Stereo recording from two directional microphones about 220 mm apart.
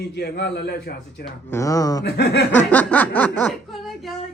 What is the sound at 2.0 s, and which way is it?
Speech, 50° left (ahead or behind).